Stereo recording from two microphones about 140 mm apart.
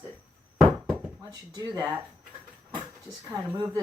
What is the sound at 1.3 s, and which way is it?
Speech, 30° right (ahead or behind).